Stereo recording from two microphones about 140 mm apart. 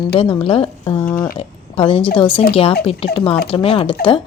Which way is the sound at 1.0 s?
15° left (ahead or behind).